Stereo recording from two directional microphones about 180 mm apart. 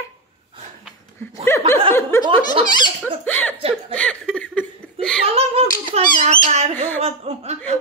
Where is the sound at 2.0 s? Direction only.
15° left (ahead or behind).